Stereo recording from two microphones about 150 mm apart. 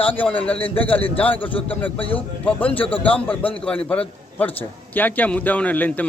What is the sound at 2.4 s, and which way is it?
A man's voice, 10° left (ahead or behind).